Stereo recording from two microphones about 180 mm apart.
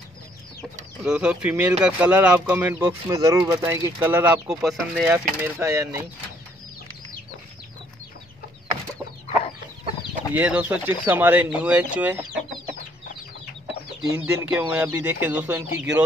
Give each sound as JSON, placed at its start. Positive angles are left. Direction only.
{"t": 1.0, "sound": "speech", "side_deg": -5}
{"t": 10.3, "sound": "speech", "side_deg": -10}
{"t": 14.1, "sound": "speech", "side_deg": -15}